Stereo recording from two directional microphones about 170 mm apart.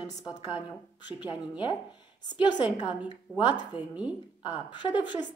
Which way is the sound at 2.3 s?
25° left (ahead or behind).